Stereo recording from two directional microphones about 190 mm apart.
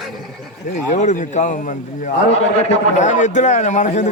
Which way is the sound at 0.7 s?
40° left (ahead or behind).